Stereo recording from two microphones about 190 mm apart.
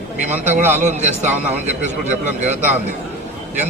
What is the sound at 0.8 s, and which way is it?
Speech, 40° right (ahead or behind).